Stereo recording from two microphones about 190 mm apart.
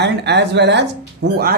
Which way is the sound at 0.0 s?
65° right (ahead or behind).